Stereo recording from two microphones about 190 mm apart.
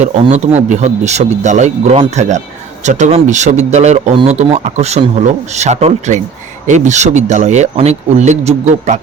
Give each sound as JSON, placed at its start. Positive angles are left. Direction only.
{"t": 0.0, "sound": "speech", "side_deg": -35}